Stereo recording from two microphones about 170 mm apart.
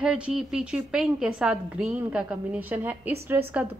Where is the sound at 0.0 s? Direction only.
5° right (ahead or behind).